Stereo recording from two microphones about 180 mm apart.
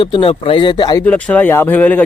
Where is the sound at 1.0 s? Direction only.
10° left (ahead or behind).